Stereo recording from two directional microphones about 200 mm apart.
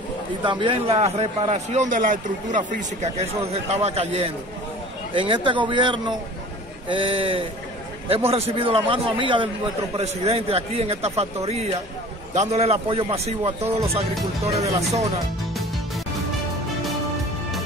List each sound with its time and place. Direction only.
0.4 s a man's voice: 25° right (ahead or behind)